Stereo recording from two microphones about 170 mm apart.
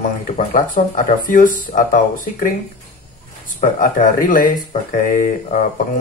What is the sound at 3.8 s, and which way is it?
Speech, 50° left (ahead or behind).